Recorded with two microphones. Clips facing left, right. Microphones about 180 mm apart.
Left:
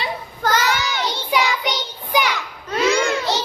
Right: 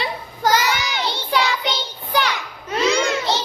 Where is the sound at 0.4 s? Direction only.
10° right (ahead or behind).